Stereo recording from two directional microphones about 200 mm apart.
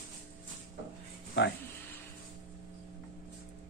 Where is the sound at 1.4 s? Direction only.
60° left (ahead or behind).